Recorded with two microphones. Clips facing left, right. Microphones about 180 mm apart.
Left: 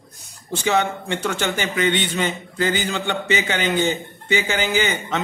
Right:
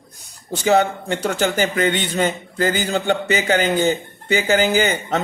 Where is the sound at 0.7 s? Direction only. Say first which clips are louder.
Right 4 dB; 35° right (ahead or behind).